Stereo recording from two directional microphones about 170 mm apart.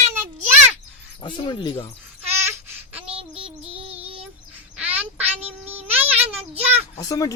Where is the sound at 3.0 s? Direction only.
35° right (ahead or behind).